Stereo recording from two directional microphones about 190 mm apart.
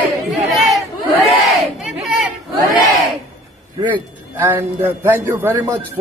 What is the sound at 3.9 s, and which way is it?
A man's voice, 10° right (ahead or behind).